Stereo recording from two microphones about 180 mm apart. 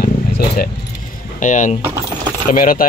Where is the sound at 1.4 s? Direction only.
45° left (ahead or behind).